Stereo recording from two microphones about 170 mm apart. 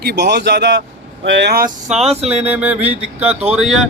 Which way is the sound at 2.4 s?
10° right (ahead or behind).